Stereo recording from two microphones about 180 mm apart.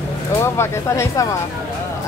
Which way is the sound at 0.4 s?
15° left (ahead or behind).